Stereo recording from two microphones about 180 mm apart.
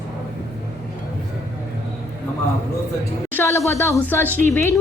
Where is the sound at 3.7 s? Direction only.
15° left (ahead or behind).